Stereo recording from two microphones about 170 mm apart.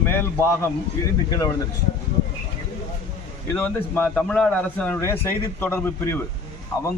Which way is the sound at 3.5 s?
10° left (ahead or behind).